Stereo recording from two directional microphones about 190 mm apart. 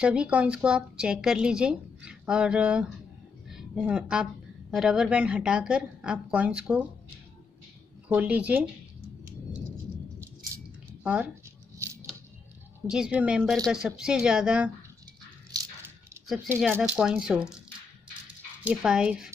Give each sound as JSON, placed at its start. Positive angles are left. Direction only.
{"t": 0.0, "sound": "a woman's voice", "side_deg": -5}
{"t": 8.1, "sound": "speech", "side_deg": -10}
{"t": 11.8, "sound": "scissors", "side_deg": -15}
{"t": 12.8, "sound": "a woman's voice", "side_deg": -5}
{"t": 16.4, "sound": "a woman's voice", "side_deg": -10}
{"t": 18.6, "sound": "a woman's voice", "side_deg": -5}